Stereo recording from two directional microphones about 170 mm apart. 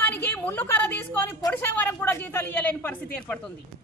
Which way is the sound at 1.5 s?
10° left (ahead or behind).